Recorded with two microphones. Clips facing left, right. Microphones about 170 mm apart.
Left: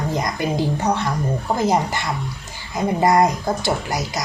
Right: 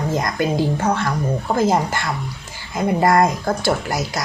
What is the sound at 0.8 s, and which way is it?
Speech, 20° left (ahead or behind).